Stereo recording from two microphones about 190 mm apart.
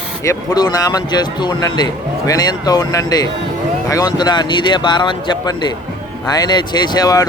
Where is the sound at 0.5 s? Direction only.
20° left (ahead or behind).